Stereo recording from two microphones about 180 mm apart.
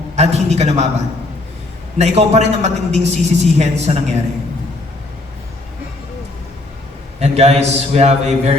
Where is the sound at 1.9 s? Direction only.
35° right (ahead or behind).